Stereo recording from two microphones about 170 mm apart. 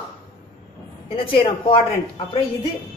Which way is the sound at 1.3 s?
30° left (ahead or behind).